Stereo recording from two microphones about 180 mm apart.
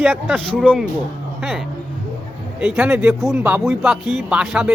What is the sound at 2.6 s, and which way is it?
Speech, 5° right (ahead or behind).